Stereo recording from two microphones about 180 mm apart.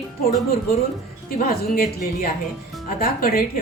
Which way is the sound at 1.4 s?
55° left (ahead or behind).